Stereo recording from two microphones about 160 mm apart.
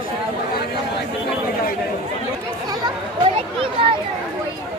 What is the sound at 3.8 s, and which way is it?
Speech, 35° right (ahead or behind).